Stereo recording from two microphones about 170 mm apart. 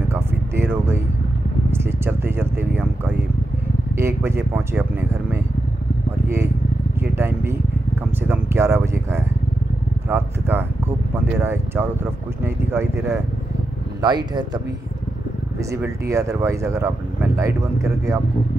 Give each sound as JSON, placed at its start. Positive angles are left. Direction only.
{"t": 0.1, "sound": "a sound", "side_deg": -15}
{"t": 1.7, "sound": "speech", "side_deg": -15}
{"t": 6.2, "sound": "speech", "side_deg": -15}
{"t": 7.0, "sound": "vehicle", "side_deg": -15}
{"t": 8.2, "sound": "speech", "side_deg": -15}
{"t": 15.7, "sound": "speech", "side_deg": -15}